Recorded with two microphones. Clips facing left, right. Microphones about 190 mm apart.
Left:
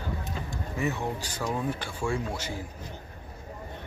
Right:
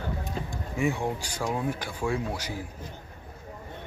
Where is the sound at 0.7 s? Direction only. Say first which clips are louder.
Right 3 dB; 15° right (ahead or behind).